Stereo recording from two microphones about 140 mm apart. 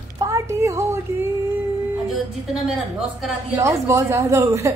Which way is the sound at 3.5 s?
20° right (ahead or behind).